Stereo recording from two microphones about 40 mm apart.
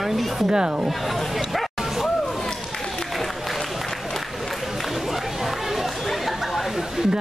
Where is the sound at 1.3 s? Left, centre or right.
Centre.